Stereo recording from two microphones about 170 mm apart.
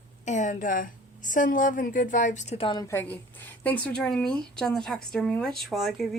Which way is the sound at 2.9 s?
10° left (ahead or behind).